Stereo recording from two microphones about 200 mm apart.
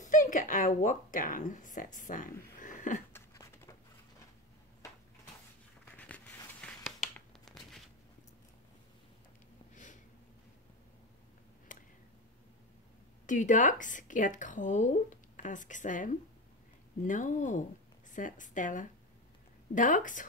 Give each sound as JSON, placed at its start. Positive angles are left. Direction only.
{"t": 0.1, "sound": "speech", "side_deg": 40}
{"t": 3.1, "sound": "a sound", "side_deg": 10}
{"t": 5.9, "sound": "tearing", "side_deg": 5}
{"t": 13.3, "sound": "speech", "side_deg": 40}